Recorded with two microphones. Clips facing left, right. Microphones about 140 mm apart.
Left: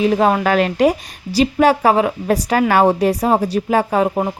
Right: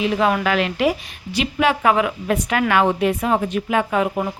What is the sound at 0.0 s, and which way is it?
A woman's voice, 40° left (ahead or behind).